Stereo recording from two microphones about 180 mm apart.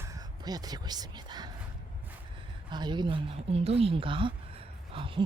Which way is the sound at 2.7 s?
25° right (ahead or behind).